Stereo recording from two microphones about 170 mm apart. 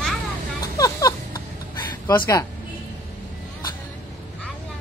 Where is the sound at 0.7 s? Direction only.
20° left (ahead or behind).